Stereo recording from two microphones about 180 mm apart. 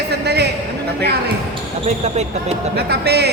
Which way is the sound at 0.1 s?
65° right (ahead or behind).